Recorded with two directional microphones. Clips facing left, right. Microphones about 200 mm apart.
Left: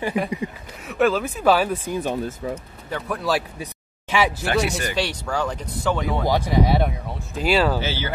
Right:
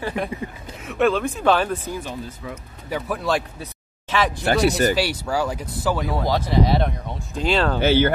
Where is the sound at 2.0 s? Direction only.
55° left (ahead or behind).